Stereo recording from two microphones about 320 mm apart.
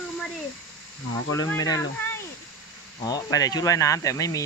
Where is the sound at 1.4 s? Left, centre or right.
Centre.